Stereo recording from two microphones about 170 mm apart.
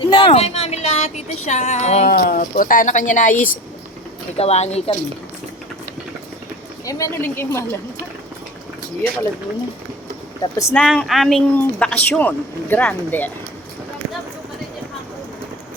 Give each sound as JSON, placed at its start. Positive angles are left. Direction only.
{"t": 0.1, "sound": "speech", "side_deg": 35}
{"t": 2.0, "sound": "speech", "side_deg": 60}
{"t": 4.4, "sound": "speech", "side_deg": 40}
{"t": 6.8, "sound": "a woman's voice", "side_deg": 15}
{"t": 10.4, "sound": "a woman's voice", "side_deg": 20}
{"t": 10.8, "sound": "a woman's voice", "side_deg": 5}